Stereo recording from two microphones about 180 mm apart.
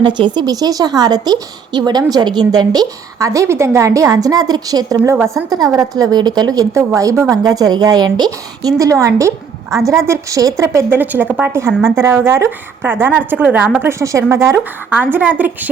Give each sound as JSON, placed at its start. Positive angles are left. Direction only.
{"t": 0.0, "sound": "a woman's voice", "side_deg": -25}